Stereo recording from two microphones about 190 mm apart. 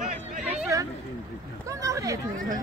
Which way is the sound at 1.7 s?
15° right (ahead or behind).